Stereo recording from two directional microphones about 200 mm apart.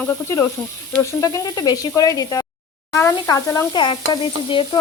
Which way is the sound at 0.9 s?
15° left (ahead or behind).